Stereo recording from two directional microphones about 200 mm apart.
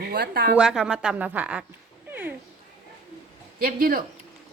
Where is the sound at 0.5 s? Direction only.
5° right (ahead or behind).